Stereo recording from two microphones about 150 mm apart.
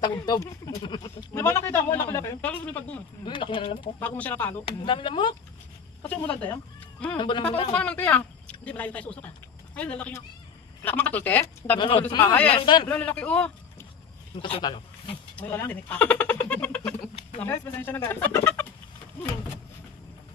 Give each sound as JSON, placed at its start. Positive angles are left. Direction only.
{"t": 0.0, "sound": "speech", "side_deg": 25}
{"t": 1.3, "sound": "speech", "side_deg": 15}
{"t": 3.3, "sound": "speech", "side_deg": 35}
{"t": 4.0, "sound": "speech", "side_deg": 10}
{"t": 4.6, "sound": "speech", "side_deg": 35}
{"t": 6.0, "sound": "speech", "side_deg": 10}
{"t": 6.5, "sound": "a sound", "side_deg": 10}
{"t": 7.2, "sound": "speech", "side_deg": 30}
{"t": 7.7, "sound": "speech", "side_deg": 10}
{"t": 12.1, "sound": "speech", "side_deg": 30}
{"t": 12.8, "sound": "speech", "side_deg": 10}
{"t": 14.4, "sound": "a man's voice", "side_deg": 30}
{"t": 15.3, "sound": "speech", "side_deg": 15}